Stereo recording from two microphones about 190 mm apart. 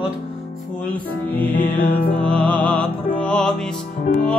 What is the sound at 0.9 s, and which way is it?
Music, 10° left (ahead or behind).